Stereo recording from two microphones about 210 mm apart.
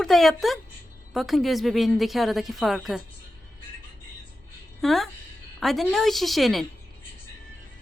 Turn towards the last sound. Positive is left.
turn(degrees=0)  # may be behind; listen again after turning